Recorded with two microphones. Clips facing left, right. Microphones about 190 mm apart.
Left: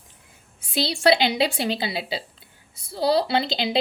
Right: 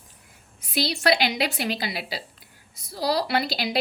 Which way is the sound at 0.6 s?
30° left (ahead or behind).